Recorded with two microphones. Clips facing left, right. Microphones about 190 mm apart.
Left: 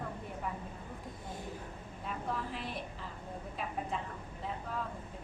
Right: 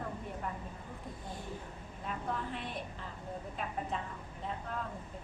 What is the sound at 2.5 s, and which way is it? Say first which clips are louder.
Speech: even; centre (ahead or behind).